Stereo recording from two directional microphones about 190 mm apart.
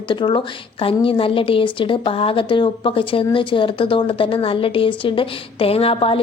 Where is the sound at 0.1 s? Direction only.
25° left (ahead or behind).